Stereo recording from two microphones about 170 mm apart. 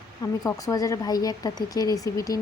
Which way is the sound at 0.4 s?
20° left (ahead or behind).